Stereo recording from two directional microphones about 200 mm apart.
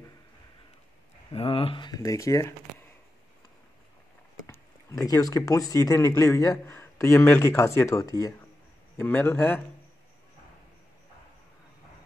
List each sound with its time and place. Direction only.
1.3 s speech: 30° left (ahead or behind)
5.0 s a man's voice: 20° left (ahead or behind)